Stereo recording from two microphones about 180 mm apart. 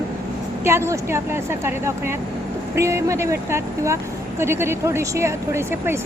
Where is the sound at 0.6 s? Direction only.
15° right (ahead or behind).